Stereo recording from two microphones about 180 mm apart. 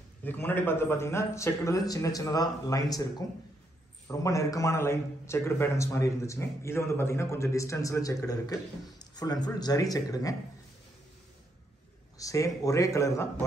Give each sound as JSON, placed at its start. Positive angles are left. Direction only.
{"t": 0.2, "sound": "a man's voice", "side_deg": 10}
{"t": 12.2, "sound": "a man's voice", "side_deg": 20}